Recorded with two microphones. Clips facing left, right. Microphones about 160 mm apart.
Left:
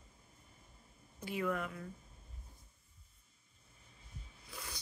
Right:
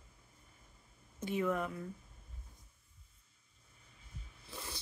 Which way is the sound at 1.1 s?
20° right (ahead or behind).